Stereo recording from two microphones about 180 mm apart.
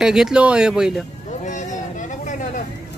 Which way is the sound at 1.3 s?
45° left (ahead or behind).